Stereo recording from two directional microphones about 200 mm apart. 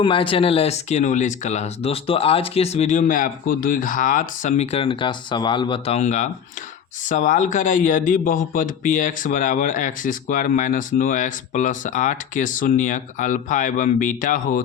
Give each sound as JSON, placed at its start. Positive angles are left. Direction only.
{"t": 0.0, "sound": "speech", "side_deg": 25}